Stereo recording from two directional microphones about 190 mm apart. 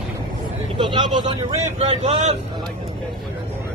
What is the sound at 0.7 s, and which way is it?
Speech, 25° right (ahead or behind).